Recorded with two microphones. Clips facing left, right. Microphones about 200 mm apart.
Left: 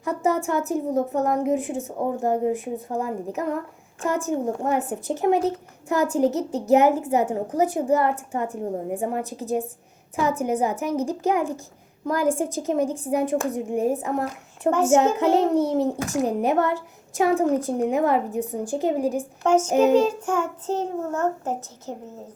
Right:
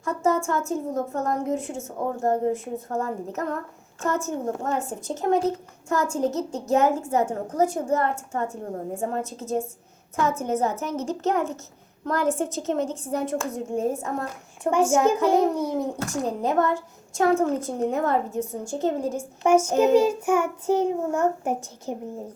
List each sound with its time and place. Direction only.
0.0 s a woman's voice: 15° left (ahead or behind)
19.4 s a child's voice: 10° right (ahead or behind)